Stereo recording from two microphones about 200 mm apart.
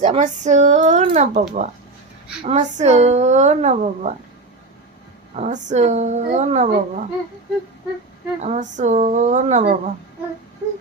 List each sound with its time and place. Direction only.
0.0 s speech: 35° right (ahead or behind)
5.3 s speech: 35° right (ahead or behind)
8.4 s speech: 35° right (ahead or behind)